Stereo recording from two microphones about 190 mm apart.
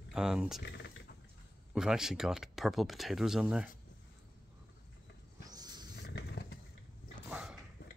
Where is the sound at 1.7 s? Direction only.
5° right (ahead or behind).